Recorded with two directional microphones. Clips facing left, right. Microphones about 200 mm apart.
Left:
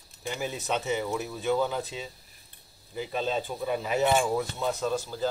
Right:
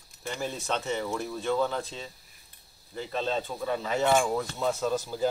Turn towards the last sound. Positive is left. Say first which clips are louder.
# right 1 dB
turn(degrees=0)  # may be behind; listen again after turning